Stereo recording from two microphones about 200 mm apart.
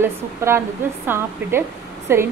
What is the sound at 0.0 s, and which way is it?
A woman's voice, 10° right (ahead or behind).